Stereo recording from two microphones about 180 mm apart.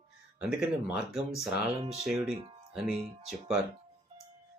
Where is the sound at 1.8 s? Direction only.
35° right (ahead or behind).